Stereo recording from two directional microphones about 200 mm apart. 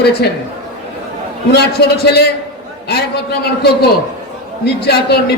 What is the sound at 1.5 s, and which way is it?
A man's voice, 55° left (ahead or behind).